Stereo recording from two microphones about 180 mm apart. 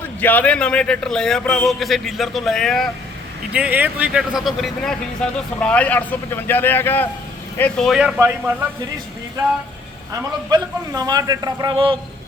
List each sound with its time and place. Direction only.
0.0 s speech: 10° left (ahead or behind)
3.5 s speech: 10° right (ahead or behind)
10.1 s a man's voice: 20° right (ahead or behind)